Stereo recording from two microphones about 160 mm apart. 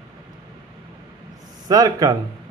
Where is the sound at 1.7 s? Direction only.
25° right (ahead or behind).